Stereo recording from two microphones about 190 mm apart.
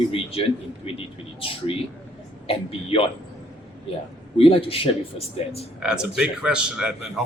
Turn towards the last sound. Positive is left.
turn(degrees=-5)  # may be behind; listen again after turning